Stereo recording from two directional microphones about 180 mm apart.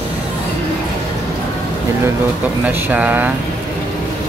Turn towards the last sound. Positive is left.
turn(degrees=-10)  # may be behind; listen again after turning